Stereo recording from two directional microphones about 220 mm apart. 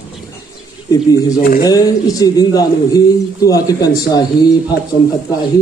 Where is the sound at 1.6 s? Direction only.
15° left (ahead or behind).